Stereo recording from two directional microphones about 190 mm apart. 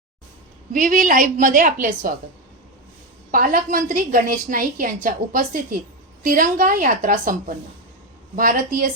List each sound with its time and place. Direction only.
0.7 s a woman's voice: 45° right (ahead or behind)
3.3 s a woman's voice: 45° right (ahead or behind)